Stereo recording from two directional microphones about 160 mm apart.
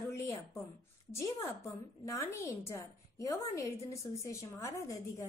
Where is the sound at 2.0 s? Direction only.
20° left (ahead or behind).